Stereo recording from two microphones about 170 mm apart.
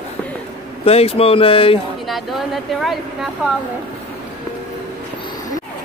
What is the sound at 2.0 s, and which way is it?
A woman's voice, centre (ahead or behind).